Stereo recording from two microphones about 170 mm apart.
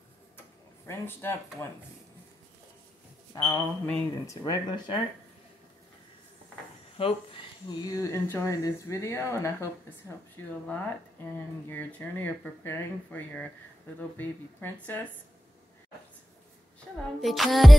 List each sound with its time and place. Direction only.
0.8 s speech: 15° left (ahead or behind)
3.3 s speech: 20° left (ahead or behind)
4.4 s speech: 25° left (ahead or behind)
7.0 s speech: 30° left (ahead or behind); by 15.0 s 10° left (ahead or behind)
16.9 s a sound: 5° left (ahead or behind)
17.2 s music: centre (ahead or behind)